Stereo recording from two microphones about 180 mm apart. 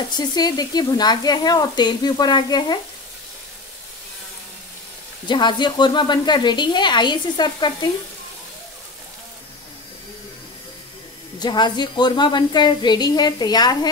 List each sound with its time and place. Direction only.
0.1 s speech: 20° left (ahead or behind)
5.3 s speech: 25° left (ahead or behind)
11.3 s speech: 25° left (ahead or behind)